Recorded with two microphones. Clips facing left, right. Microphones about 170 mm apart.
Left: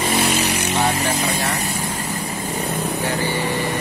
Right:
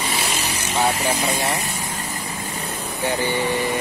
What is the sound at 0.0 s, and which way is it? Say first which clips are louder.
Vehicle: left 6 dB; 60° left (ahead or behind).